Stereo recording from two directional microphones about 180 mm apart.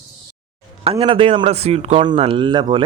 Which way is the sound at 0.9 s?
30° right (ahead or behind).